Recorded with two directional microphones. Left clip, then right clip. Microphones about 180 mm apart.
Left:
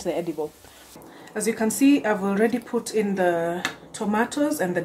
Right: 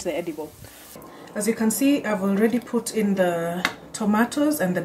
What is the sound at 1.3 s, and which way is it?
Speech, 30° left (ahead or behind).